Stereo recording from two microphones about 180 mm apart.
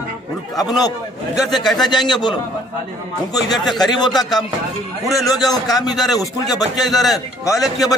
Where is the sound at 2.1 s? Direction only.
25° left (ahead or behind).